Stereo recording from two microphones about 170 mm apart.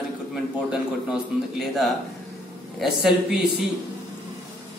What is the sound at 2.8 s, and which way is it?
Speech, centre (ahead or behind).